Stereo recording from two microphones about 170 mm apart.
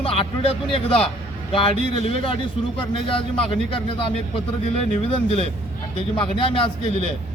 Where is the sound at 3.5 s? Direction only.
30° left (ahead or behind).